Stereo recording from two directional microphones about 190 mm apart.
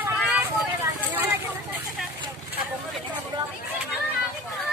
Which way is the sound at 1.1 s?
10° right (ahead or behind).